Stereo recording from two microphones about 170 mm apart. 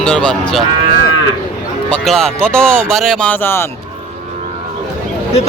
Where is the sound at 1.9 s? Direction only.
5° left (ahead or behind).